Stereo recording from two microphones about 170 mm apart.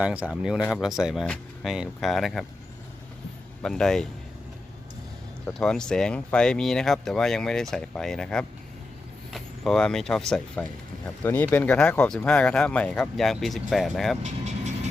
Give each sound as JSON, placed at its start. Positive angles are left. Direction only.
{"t": 0.0, "sound": "speech", "side_deg": -5}
{"t": 3.6, "sound": "speech", "side_deg": 5}
{"t": 5.5, "sound": "speech", "side_deg": 5}
{"t": 14.2, "sound": "speech", "side_deg": -45}